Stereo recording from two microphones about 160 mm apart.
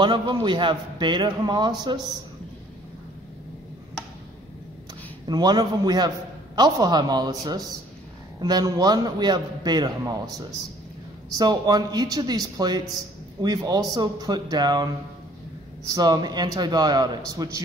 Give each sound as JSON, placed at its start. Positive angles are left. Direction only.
{"t": 0.0, "sound": "a man's voice", "side_deg": -30}
{"t": 5.2, "sound": "a man's voice", "side_deg": -25}